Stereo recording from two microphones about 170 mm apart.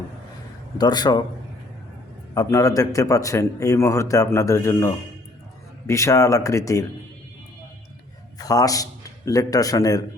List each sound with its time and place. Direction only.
0.8 s a man's voice: 25° left (ahead or behind)
2.3 s a man's voice: 20° left (ahead or behind)
8.4 s a man's voice: 20° left (ahead or behind)